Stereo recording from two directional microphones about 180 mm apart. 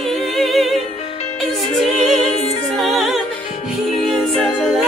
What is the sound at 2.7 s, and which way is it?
Music, centre (ahead or behind).